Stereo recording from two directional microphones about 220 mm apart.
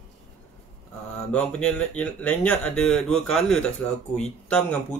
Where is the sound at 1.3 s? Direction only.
5° left (ahead or behind).